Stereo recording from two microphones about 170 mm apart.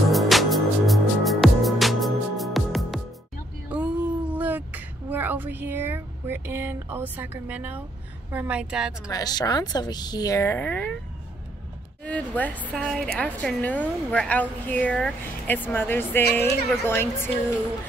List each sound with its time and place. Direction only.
0.1 s music: centre (ahead or behind)
3.6 s a sound: 10° right (ahead or behind)
8.3 s speech: 10° right (ahead or behind)
9.1 s a woman's voice: 25° left (ahead or behind)
12.0 s a woman's voice: 10° left (ahead or behind)